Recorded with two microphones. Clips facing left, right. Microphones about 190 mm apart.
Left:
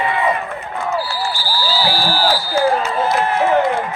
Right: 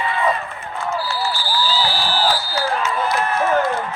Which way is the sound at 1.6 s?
45° left (ahead or behind).